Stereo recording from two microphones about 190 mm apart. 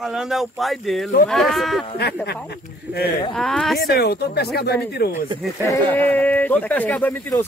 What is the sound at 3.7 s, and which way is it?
Speech, 55° left (ahead or behind).